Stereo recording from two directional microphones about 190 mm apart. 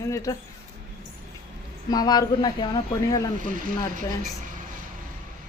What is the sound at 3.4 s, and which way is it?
Speech, 45° right (ahead or behind).